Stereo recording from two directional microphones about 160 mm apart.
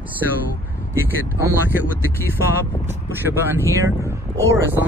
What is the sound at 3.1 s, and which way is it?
Speech, 15° right (ahead or behind).